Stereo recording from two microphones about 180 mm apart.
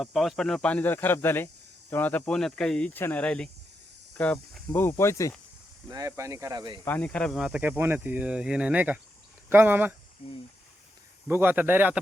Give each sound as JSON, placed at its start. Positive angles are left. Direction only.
{"t": 0.0, "sound": "speech", "side_deg": 0}
{"t": 5.9, "sound": "speech", "side_deg": -15}
{"t": 6.8, "sound": "speech", "side_deg": 10}
{"t": 10.2, "sound": "speech", "side_deg": 30}
{"t": 11.3, "sound": "speech", "side_deg": -10}